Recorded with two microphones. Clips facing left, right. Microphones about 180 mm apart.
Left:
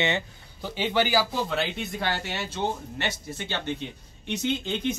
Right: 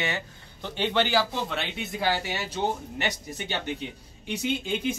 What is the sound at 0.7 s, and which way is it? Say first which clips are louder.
Speech: even; 5° left (ahead or behind).